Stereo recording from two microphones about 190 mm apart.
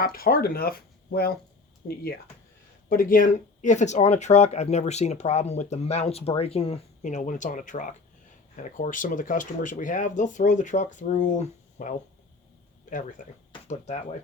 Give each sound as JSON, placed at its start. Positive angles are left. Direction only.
{"t": 0.0, "sound": "speech", "side_deg": 50}
{"t": 2.9, "sound": "speech", "side_deg": 50}